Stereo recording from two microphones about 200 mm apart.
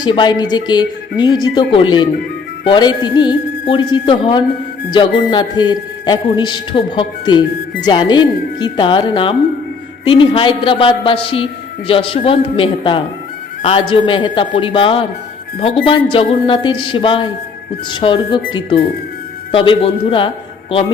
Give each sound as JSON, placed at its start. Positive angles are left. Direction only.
{"t": 0.0, "sound": "a man's voice", "side_deg": 20}